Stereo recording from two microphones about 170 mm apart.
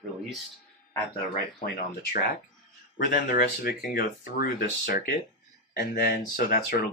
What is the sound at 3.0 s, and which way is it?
Speech, 70° left (ahead or behind).